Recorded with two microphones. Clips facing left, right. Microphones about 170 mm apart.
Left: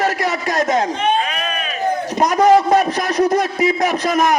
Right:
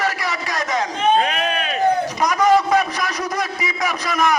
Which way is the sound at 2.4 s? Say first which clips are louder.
Left 3 dB; 45° left (ahead or behind).